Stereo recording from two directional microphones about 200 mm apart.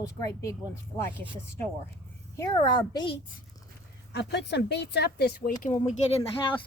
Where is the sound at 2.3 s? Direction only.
20° left (ahead or behind).